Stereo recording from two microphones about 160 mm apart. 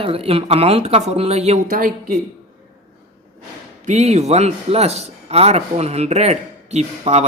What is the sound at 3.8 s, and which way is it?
A man's voice, 45° right (ahead or behind).